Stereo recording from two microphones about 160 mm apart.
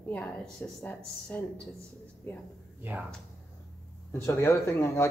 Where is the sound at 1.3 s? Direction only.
10° left (ahead or behind).